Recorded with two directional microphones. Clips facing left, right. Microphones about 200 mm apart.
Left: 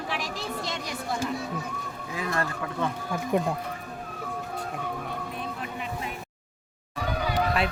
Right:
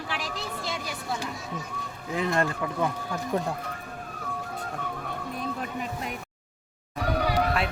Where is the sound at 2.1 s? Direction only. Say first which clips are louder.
Right 4 dB; 25° right (ahead or behind).